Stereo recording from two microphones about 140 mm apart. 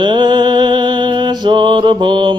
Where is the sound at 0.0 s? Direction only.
30° right (ahead or behind).